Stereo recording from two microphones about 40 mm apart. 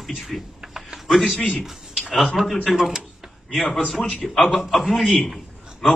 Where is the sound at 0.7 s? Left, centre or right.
Centre.